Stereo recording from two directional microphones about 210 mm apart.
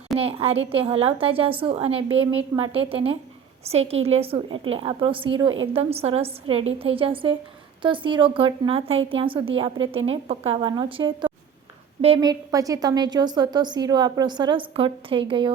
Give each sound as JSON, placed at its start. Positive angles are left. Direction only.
{"t": 0.2, "sound": "a woman's voice", "side_deg": -25}